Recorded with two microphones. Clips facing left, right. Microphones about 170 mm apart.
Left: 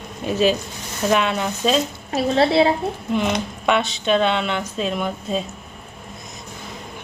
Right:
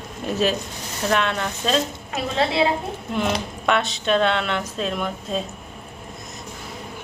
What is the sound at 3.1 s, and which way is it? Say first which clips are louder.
Speech: left 2 dB; centre (ahead or behind).